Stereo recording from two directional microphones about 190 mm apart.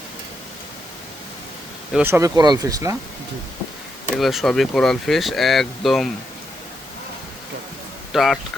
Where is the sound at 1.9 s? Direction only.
10° right (ahead or behind).